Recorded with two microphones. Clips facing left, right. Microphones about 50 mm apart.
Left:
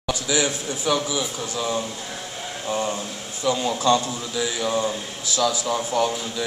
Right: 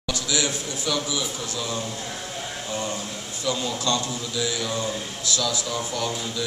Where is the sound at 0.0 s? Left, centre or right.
Left.